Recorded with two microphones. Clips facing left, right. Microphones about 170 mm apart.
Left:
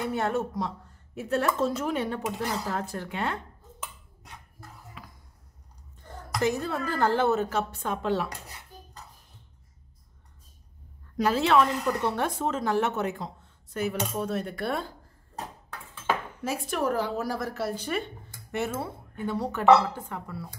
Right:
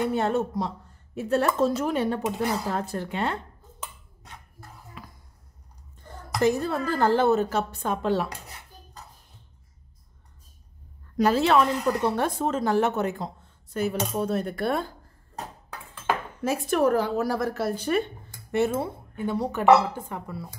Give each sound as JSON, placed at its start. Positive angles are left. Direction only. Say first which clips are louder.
{"t": 0.1, "sound": "speech", "louder": "right 3 dB", "side_deg": -25}
{"t": 6.4, "sound": "a woman's voice", "louder": "right 4 dB", "side_deg": -35}
{"t": 11.1, "sound": "a woman's voice", "louder": "right 2 dB", "side_deg": -40}
{"t": 16.4, "sound": "a woman's voice", "louder": "right 6 dB", "side_deg": -50}
{"t": 18.7, "sound": "speech", "louder": "right 5 dB", "side_deg": -15}